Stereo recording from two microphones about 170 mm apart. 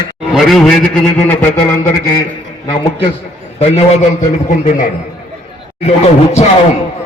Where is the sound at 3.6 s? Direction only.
40° left (ahead or behind).